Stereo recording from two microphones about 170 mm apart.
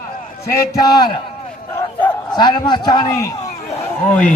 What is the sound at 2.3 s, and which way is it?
A man's voice, 25° left (ahead or behind).